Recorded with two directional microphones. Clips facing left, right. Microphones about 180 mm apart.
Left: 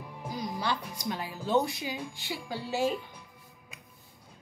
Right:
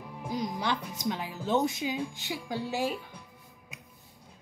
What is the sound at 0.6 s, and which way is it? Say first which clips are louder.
A woman's voice: right 1 dB; 20° right (ahead or behind).